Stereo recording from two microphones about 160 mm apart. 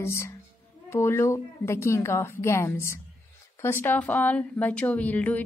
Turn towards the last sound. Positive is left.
turn(degrees=10)  # may be behind; listen again after turning